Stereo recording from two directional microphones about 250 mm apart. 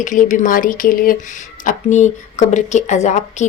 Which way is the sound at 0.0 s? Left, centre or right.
Left.